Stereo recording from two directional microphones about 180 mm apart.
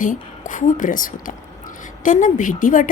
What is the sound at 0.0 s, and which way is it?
A woman's voice, 45° left (ahead or behind).